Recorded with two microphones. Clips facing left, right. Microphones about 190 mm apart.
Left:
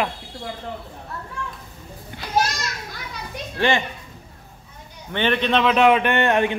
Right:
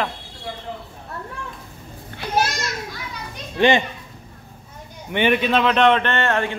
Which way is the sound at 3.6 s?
20° right (ahead or behind).